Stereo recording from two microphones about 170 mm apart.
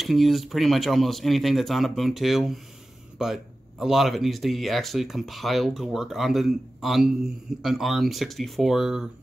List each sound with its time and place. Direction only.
0.0 s speech: centre (ahead or behind)